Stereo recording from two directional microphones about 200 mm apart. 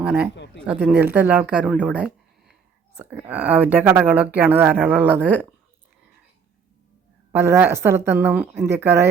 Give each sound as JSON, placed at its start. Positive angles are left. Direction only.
{"t": 0.0, "sound": "speech", "side_deg": -5}
{"t": 0.3, "sound": "a sound", "side_deg": 60}
{"t": 0.8, "sound": "speech", "side_deg": -5}
{"t": 1.8, "sound": "a sound", "side_deg": -5}
{"t": 3.0, "sound": "speech", "side_deg": -10}
{"t": 7.3, "sound": "speech", "side_deg": -10}